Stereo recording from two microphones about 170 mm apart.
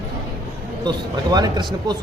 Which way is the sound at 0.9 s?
25° right (ahead or behind).